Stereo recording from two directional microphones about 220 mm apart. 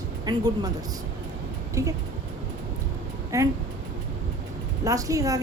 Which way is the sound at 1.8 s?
15° right (ahead or behind).